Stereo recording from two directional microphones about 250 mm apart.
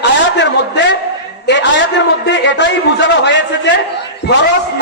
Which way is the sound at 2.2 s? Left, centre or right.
Left.